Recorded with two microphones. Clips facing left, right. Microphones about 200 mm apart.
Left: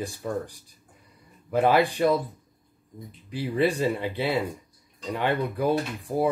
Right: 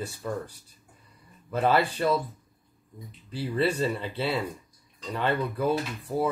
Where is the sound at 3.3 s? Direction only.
15° left (ahead or behind).